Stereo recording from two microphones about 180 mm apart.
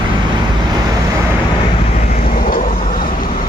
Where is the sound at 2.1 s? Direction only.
50° left (ahead or behind).